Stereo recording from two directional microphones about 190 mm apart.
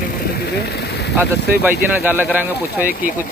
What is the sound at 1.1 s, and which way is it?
Speech, 10° right (ahead or behind).